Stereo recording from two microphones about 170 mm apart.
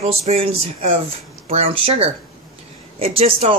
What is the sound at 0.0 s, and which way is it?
Speech, 40° right (ahead or behind).